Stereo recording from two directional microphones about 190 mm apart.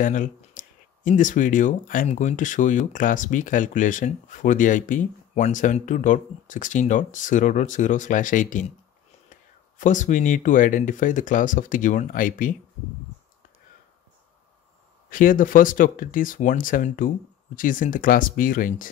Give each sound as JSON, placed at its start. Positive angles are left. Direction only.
{"t": 0.0, "sound": "speech", "side_deg": 45}
{"t": 15.0, "sound": "speech", "side_deg": 45}